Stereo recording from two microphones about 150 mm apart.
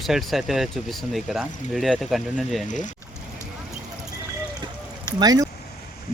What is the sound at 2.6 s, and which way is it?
Speech, 55° left (ahead or behind).